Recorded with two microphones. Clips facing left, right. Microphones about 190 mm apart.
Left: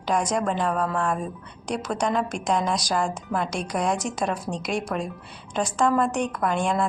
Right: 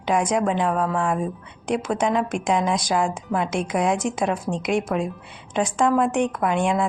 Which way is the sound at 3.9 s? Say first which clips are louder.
Right 4 dB; 55° right (ahead or behind).